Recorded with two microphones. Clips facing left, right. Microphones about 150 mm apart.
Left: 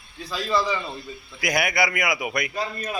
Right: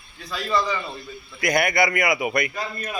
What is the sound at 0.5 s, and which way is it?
A man's voice, 10° left (ahead or behind).